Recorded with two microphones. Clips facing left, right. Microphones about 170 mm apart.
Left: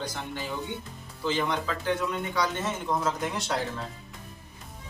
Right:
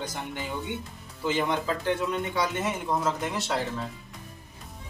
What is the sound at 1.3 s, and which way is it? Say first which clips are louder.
A man's voice: right 2 dB; 20° right (ahead or behind).